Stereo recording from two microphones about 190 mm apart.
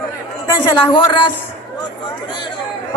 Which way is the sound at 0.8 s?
25° left (ahead or behind).